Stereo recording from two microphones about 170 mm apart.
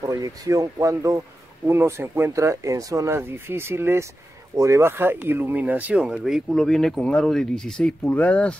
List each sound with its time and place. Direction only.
0.0 s speech: 20° right (ahead or behind); by 8.5 s 10° left (ahead or behind)